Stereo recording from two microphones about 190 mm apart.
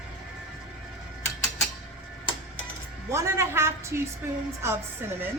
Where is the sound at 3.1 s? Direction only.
15° right (ahead or behind).